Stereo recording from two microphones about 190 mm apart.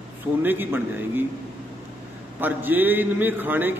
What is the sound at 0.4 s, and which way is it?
Speech, 10° right (ahead or behind).